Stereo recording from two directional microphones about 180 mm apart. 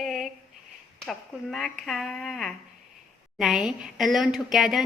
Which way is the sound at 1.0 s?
Centre (ahead or behind).